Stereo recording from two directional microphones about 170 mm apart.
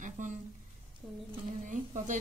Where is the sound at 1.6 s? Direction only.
45° right (ahead or behind).